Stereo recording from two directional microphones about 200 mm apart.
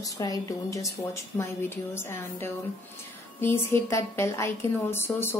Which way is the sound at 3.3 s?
10° left (ahead or behind).